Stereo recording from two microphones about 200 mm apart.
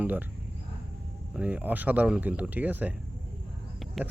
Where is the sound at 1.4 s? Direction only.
5° right (ahead or behind).